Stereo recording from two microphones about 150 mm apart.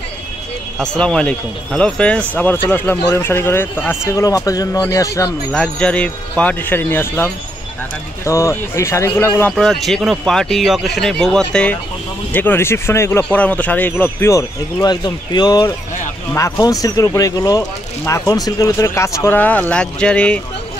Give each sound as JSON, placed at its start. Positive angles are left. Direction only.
{"t": 0.7, "sound": "speech", "side_deg": 5}
{"t": 5.5, "sound": "speech", "side_deg": 5}
{"t": 8.3, "sound": "speech", "side_deg": 20}